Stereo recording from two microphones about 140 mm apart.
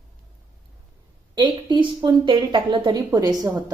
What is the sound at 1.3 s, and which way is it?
A woman's voice, 35° right (ahead or behind).